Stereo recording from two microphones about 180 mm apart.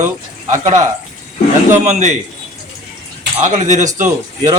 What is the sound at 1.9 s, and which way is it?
Speech, 40° right (ahead or behind).